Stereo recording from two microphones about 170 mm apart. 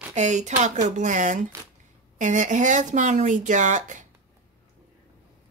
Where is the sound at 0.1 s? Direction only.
45° right (ahead or behind).